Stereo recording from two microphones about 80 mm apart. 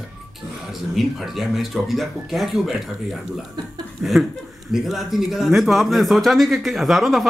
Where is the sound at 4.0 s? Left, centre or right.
Centre.